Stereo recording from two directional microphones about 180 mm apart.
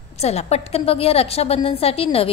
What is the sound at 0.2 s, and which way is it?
A woman's voice, 35° left (ahead or behind).